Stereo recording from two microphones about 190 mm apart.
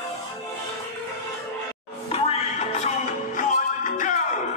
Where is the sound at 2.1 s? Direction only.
30° left (ahead or behind).